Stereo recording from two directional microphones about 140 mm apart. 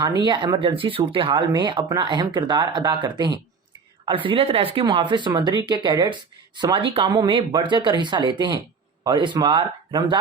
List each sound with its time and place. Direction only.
0.3 s speech: 35° right (ahead or behind)